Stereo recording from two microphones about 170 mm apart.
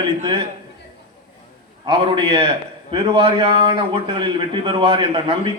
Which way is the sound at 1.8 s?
30° right (ahead or behind).